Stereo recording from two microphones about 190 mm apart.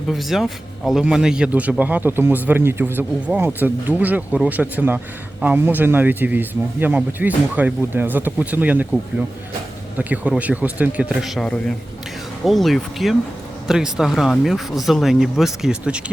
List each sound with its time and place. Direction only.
0.1 s speech: centre (ahead or behind)
10.0 s speech: 10° right (ahead or behind)